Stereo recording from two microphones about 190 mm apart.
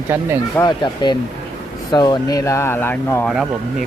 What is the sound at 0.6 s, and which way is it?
Speech, 20° left (ahead or behind).